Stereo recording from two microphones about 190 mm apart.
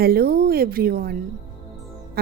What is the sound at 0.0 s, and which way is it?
Music, 55° right (ahead or behind).